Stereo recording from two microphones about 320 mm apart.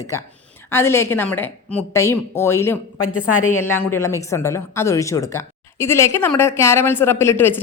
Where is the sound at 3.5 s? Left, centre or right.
Left.